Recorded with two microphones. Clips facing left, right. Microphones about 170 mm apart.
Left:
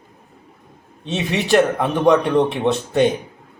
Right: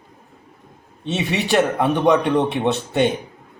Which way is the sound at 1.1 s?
Centre (ahead or behind).